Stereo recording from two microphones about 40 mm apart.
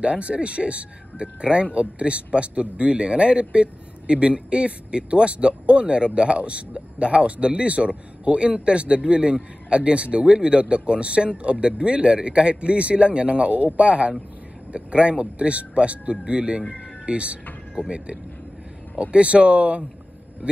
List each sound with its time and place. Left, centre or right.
0.0 s speech: right